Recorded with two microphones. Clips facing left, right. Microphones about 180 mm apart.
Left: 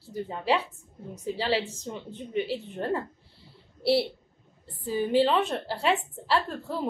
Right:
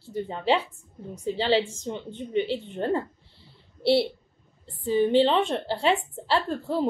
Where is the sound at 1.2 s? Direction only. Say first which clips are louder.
Right 4 dB; 30° right (ahead or behind).